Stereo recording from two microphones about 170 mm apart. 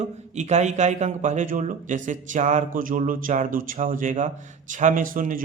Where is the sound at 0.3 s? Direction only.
45° right (ahead or behind).